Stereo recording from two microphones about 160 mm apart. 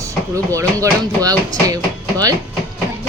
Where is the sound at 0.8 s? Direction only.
20° right (ahead or behind).